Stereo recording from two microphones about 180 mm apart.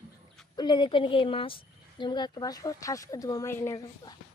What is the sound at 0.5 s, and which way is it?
Speech, 25° left (ahead or behind).